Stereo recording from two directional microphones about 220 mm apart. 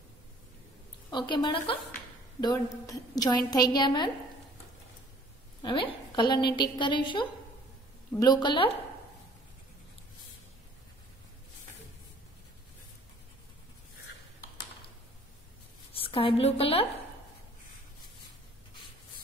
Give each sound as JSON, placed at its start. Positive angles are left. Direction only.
{"t": 1.1, "sound": "a woman's voice", "side_deg": 20}
{"t": 5.6, "sound": "a woman's voice", "side_deg": 20}
{"t": 15.9, "sound": "a woman's voice", "side_deg": 25}